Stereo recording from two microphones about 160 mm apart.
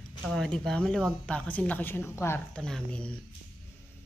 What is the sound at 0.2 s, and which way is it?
Speech, centre (ahead or behind).